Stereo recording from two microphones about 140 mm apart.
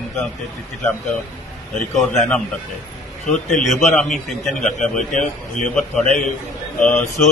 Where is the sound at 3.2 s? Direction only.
55° left (ahead or behind).